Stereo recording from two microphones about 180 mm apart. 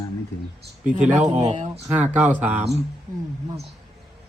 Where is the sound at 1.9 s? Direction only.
10° right (ahead or behind).